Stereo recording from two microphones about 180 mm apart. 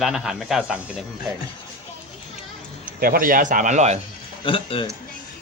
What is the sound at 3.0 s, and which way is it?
Speech, 55° right (ahead or behind).